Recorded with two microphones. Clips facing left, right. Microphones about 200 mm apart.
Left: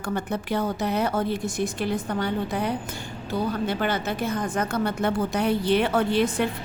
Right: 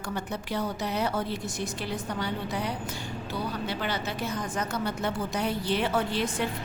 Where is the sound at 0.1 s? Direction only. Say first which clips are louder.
Left 6 dB; 55° left (ahead or behind).